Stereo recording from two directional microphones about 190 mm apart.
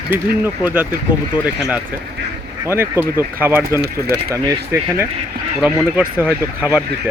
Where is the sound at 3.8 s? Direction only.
60° right (ahead or behind).